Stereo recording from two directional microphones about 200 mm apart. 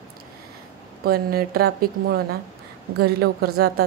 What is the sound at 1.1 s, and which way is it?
A woman's voice, 50° right (ahead or behind).